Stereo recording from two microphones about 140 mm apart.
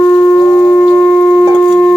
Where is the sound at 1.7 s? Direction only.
15° left (ahead or behind).